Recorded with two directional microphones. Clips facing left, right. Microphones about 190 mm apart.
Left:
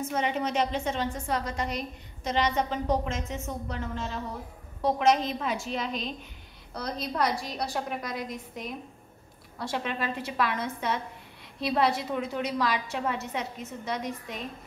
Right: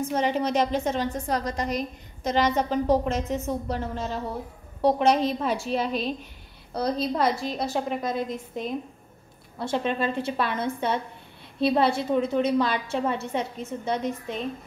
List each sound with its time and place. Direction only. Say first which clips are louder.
0.1 s a woman's voice: right 4 dB; 35° right (ahead or behind)
4.9 s a woman's voice: right 3 dB; 35° right (ahead or behind)